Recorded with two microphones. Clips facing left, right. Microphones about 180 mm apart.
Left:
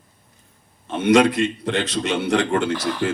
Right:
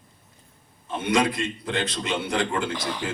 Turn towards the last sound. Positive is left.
turn(degrees=-15)  # may be behind; listen again after turning